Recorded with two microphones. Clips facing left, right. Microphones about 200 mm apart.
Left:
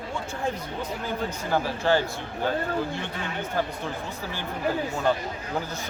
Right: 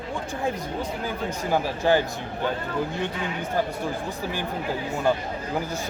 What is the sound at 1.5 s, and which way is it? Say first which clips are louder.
Speech: right 2 dB; 15° right (ahead or behind).